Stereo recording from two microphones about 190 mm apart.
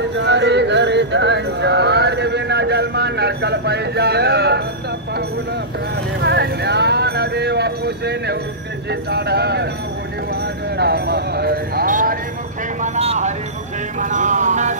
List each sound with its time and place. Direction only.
0.1 s music: 65° right (ahead or behind)
6.2 s speech: 60° right (ahead or behind)
10.8 s music: 60° right (ahead or behind)
12.8 s a sound: 35° right (ahead or behind)
13.9 s vehicle: 40° right (ahead or behind)